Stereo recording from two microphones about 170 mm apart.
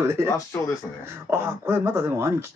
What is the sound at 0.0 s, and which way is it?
Speech, 15° right (ahead or behind).